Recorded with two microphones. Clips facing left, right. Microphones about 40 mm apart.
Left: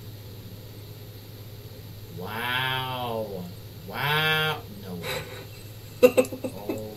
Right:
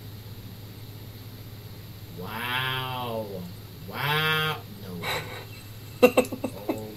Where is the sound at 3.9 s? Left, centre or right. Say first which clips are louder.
Left 1 dB; centre.